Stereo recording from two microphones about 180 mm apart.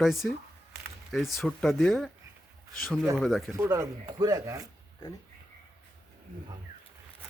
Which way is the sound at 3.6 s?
15° right (ahead or behind).